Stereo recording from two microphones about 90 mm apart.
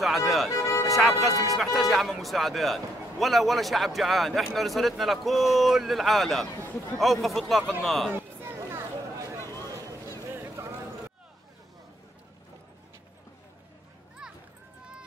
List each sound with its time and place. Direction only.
0.0 s a man's voice: centre (ahead or behind)
0.5 s music: 35° left (ahead or behind)
0.8 s speech: centre (ahead or behind)
1.3 s speech: 40° left (ahead or behind)
1.6 s a man's voice: centre (ahead or behind)
6.6 s a man's voice: 25° left (ahead or behind)
7.0 s a man's voice: centre (ahead or behind)
8.4 s a sound: 30° right (ahead or behind)
14.2 s a sound: 5° right (ahead or behind)